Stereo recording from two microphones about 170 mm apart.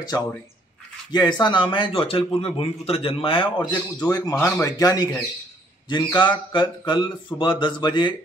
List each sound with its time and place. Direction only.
0.0 s speech: 25° left (ahead or behind)